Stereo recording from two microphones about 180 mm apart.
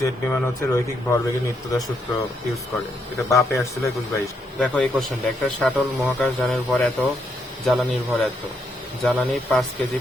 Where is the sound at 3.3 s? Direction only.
15° left (ahead or behind).